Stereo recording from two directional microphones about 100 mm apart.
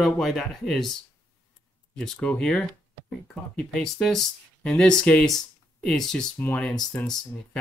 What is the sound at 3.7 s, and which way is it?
Speech, 5° left (ahead or behind).